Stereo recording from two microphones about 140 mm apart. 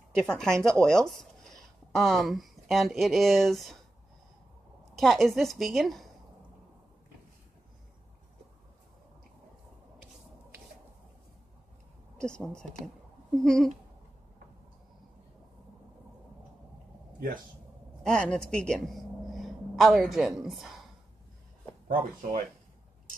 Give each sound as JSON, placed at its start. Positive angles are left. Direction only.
{"t": 0.3, "sound": "speech", "side_deg": 5}
{"t": 4.9, "sound": "a woman's voice", "side_deg": 0}
{"t": 12.2, "sound": "speech", "side_deg": 5}
{"t": 18.0, "sound": "a man's voice", "side_deg": 5}
{"t": 21.8, "sound": "speech", "side_deg": -70}